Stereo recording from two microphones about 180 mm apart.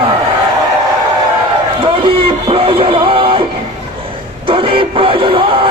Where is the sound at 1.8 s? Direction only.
30° right (ahead or behind).